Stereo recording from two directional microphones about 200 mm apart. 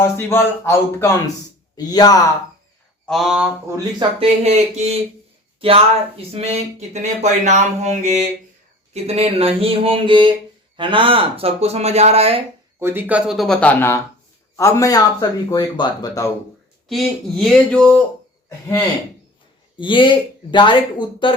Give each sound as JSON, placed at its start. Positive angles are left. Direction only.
{"t": 0.0, "sound": "speech", "side_deg": 10}
{"t": 3.1, "sound": "speech", "side_deg": 0}
{"t": 4.2, "sound": "speech", "side_deg": -30}
{"t": 12.8, "sound": "speech", "side_deg": -10}
{"t": 16.9, "sound": "speech", "side_deg": 0}
{"t": 19.7, "sound": "speech", "side_deg": 25}